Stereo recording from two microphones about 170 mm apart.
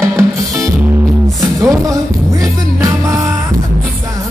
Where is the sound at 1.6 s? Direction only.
20° right (ahead or behind).